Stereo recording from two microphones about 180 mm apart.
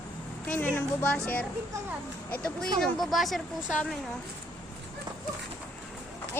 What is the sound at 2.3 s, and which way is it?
Speech, 5° left (ahead or behind).